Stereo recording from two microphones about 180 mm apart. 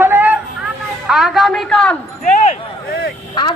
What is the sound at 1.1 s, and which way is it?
Speech, centre (ahead or behind).